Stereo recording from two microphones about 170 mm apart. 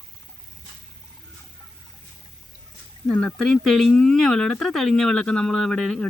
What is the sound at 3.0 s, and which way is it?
Speech, 5° left (ahead or behind).